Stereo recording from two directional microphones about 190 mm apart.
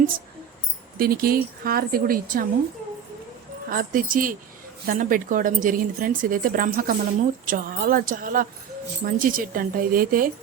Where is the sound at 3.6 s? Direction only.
45° right (ahead or behind).